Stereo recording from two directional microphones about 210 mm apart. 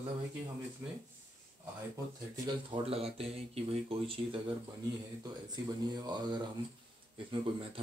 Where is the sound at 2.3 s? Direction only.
20° right (ahead or behind).